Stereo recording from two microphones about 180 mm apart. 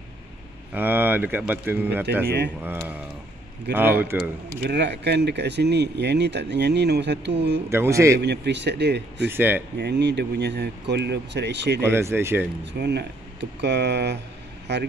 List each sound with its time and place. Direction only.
0.7 s speech: 10° right (ahead or behind)
2.2 s speech: 70° right (ahead or behind)
2.6 s speech: 10° right (ahead or behind)
4.6 s speech: 70° right (ahead or behind)
7.7 s speech: 15° right (ahead or behind)
8.2 s speech: 70° right (ahead or behind)
9.3 s speech: 10° right (ahead or behind)
9.8 s speech: 70° right (ahead or behind)
11.8 s speech: 15° right (ahead or behind)
12.8 s speech: 70° right (ahead or behind)